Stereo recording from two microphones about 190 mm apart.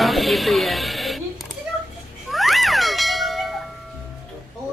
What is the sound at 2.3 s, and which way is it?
Cat, centre (ahead or behind).